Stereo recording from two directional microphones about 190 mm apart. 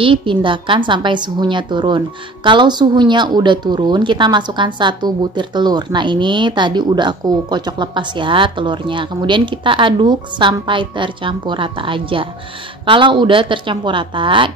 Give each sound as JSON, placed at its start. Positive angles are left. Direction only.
{"t": 0.0, "sound": "a woman's voice", "side_deg": -25}